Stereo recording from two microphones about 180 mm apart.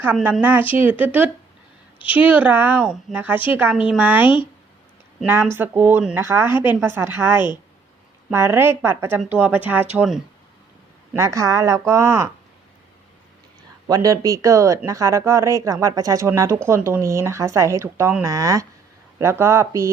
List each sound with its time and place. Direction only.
0.2 s speech: 5° right (ahead or behind)
13.8 s speech: 20° right (ahead or behind)